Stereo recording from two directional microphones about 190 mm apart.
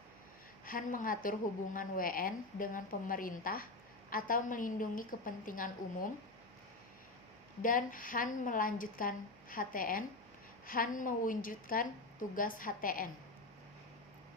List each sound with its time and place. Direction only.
0.6 s a woman's voice: 45° left (ahead or behind)
7.6 s a woman's voice: 45° left (ahead or behind)